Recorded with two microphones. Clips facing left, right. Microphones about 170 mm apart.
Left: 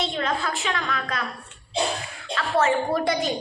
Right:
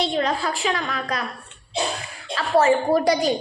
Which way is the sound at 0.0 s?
35° right (ahead or behind).